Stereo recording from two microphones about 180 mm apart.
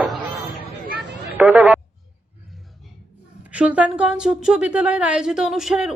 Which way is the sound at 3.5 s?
5° right (ahead or behind).